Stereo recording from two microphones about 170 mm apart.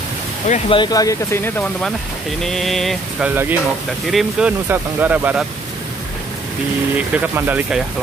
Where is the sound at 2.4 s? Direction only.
Centre (ahead or behind).